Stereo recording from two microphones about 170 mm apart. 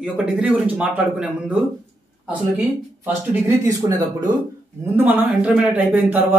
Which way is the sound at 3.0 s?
15° right (ahead or behind).